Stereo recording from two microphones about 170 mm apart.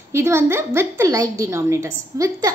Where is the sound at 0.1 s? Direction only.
15° right (ahead or behind).